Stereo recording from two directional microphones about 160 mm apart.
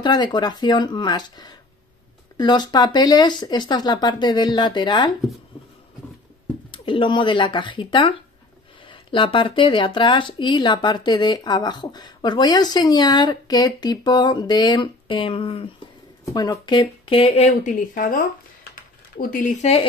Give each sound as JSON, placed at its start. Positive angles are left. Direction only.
{"t": 0.0, "sound": "speech", "side_deg": 25}
{"t": 6.7, "sound": "speech", "side_deg": 30}